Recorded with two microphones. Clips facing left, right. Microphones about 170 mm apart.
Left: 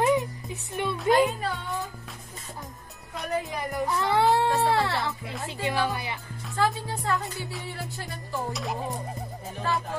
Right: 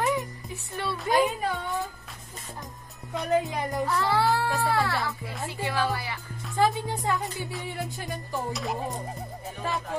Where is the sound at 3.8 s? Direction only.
20° left (ahead or behind).